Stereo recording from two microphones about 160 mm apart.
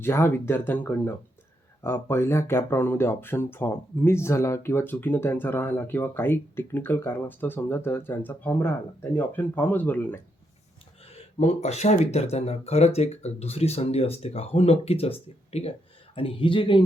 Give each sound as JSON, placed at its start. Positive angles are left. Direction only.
{"t": 0.0, "sound": "speech", "side_deg": 15}
{"t": 11.1, "sound": "speech", "side_deg": 45}